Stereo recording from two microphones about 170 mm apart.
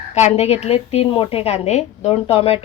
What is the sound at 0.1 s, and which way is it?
A woman's voice, 40° left (ahead or behind).